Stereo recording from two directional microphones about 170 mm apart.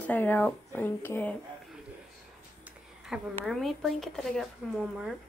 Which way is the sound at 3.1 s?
5° right (ahead or behind).